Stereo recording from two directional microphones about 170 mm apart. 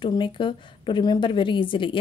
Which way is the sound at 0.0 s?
30° left (ahead or behind).